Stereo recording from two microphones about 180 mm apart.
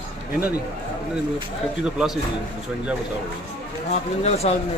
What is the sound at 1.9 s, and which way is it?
Speech, centre (ahead or behind).